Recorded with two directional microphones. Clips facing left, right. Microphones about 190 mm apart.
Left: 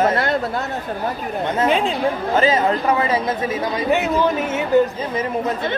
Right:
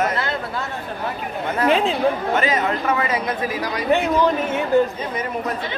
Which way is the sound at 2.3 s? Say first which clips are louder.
Left 3 dB; 30° left (ahead or behind).